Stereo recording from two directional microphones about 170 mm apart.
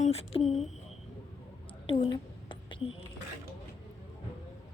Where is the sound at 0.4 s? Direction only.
Centre (ahead or behind).